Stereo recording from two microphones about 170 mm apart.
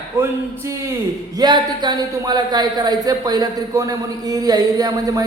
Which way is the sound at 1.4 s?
25° right (ahead or behind).